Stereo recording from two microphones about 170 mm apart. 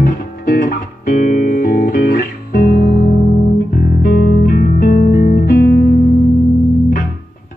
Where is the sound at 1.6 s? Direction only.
65° left (ahead or behind).